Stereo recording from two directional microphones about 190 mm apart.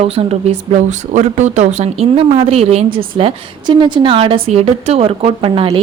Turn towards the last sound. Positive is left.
turn(degrees=-30)  # may be behind; listen again after turning